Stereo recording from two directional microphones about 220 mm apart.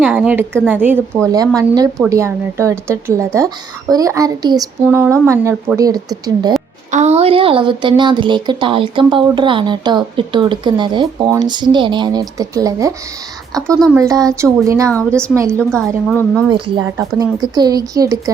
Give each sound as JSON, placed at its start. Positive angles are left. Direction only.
{"t": 0.0, "sound": "speech", "side_deg": -5}
{"t": 6.9, "sound": "speech", "side_deg": -30}
{"t": 14.8, "sound": "a woman's voice", "side_deg": 5}
{"t": 16.5, "sound": "speech", "side_deg": -20}